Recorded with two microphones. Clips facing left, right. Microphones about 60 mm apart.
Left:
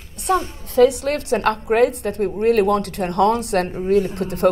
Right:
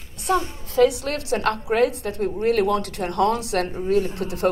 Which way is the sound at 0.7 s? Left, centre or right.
Left.